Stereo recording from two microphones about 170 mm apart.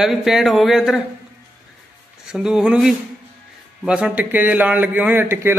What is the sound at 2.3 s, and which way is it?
A man's voice, 5° right (ahead or behind).